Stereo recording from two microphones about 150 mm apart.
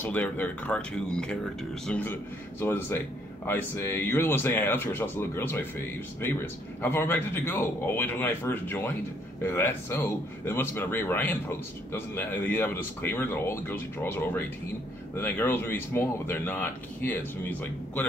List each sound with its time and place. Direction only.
0.0 s speech: 10° left (ahead or behind)